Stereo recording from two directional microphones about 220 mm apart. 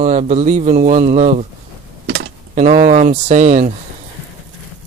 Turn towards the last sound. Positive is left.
turn(degrees=-35)  # may be behind; listen again after turning